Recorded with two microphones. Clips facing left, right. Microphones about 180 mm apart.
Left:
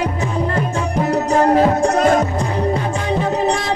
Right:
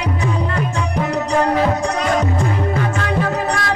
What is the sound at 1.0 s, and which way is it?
Music, 45° left (ahead or behind).